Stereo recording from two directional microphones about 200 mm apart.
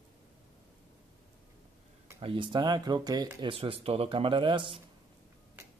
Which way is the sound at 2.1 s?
25° right (ahead or behind).